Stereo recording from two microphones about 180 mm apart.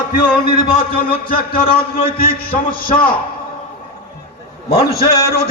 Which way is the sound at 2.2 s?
55° left (ahead or behind).